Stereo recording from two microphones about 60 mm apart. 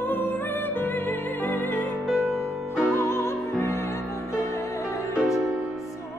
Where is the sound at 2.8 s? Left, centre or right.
Left.